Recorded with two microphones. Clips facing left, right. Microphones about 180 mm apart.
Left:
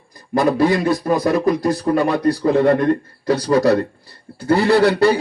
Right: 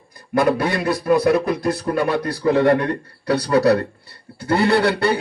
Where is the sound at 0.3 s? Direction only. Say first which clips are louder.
Left 3 dB; 65° right (ahead or behind).